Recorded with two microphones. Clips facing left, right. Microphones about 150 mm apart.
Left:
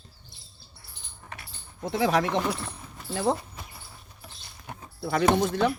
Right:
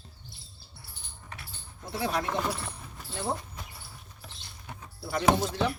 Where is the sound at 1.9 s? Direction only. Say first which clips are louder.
Left 6 dB; 90° left.